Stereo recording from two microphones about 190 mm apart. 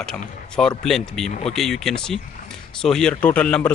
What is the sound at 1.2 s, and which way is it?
Speech, 35° left (ahead or behind).